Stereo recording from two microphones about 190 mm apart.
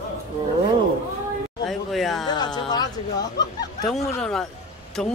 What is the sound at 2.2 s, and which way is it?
Speech, 20° left (ahead or behind).